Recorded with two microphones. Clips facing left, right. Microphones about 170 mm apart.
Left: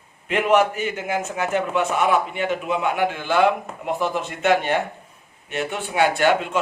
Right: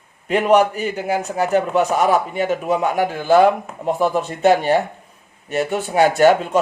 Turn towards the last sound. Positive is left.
turn(degrees=-40)  # may be behind; listen again after turning